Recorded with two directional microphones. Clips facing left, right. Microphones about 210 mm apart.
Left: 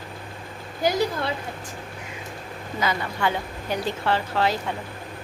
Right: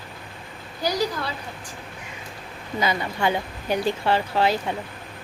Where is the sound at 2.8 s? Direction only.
15° right (ahead or behind).